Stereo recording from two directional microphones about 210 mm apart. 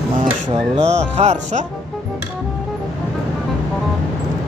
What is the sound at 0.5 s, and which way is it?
Music, 30° right (ahead or behind).